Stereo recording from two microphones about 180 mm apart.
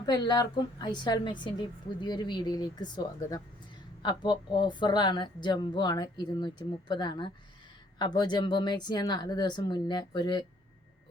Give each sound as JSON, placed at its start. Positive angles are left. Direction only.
{"t": 0.0, "sound": "speech", "side_deg": 20}